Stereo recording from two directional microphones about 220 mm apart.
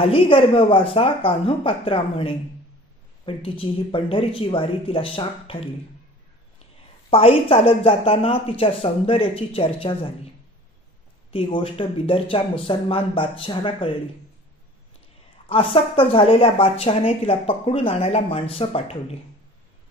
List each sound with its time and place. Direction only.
0.0 s speech: 25° left (ahead or behind)
7.1 s speech: 25° left (ahead or behind)
11.3 s speech: 25° left (ahead or behind)
15.4 s speech: 25° left (ahead or behind)